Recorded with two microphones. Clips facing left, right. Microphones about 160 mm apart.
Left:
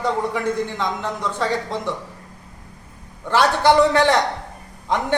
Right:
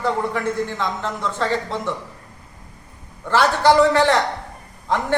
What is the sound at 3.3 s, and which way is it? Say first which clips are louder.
Speech: even; 15° left (ahead or behind).